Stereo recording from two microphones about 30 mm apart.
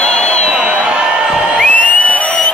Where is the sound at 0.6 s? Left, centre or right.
Right.